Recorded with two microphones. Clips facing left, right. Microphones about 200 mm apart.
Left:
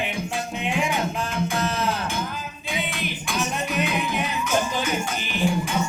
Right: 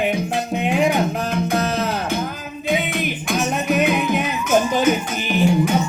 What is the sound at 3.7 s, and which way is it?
Music, 40° right (ahead or behind).